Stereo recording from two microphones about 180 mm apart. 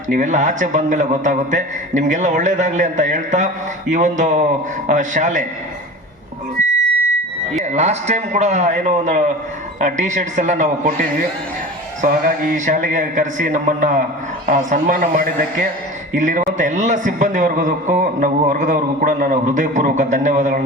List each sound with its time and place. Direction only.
0.1 s a man's voice: 45° right (ahead or behind)
7.6 s a man's voice: 40° right (ahead or behind)